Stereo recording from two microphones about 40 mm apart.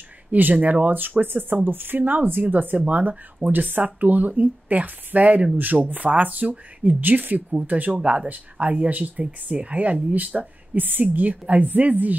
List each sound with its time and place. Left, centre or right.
0.3 s speech: right
7.0 s speech: right